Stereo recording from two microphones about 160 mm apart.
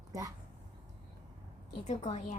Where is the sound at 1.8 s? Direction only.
45° left (ahead or behind).